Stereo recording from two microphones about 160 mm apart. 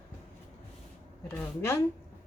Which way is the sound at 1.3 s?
15° left (ahead or behind).